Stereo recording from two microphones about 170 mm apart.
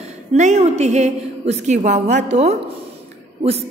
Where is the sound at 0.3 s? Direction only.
40° right (ahead or behind).